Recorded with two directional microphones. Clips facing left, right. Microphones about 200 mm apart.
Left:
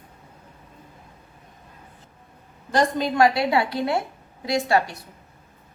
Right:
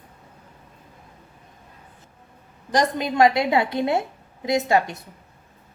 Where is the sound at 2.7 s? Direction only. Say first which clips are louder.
Even; 20° right (ahead or behind).